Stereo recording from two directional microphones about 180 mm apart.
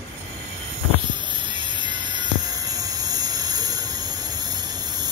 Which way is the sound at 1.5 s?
25° right (ahead or behind).